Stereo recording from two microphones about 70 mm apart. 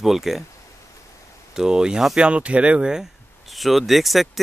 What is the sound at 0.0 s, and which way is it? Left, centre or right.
Speech, centre.